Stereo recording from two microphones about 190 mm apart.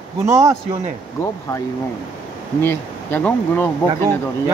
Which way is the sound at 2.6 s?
10° left (ahead or behind).